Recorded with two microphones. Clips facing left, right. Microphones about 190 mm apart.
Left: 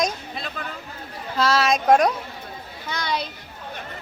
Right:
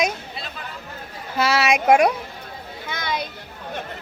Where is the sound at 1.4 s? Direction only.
10° right (ahead or behind).